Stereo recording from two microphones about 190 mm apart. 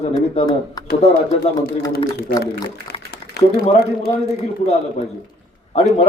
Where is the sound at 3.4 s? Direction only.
60° left (ahead or behind).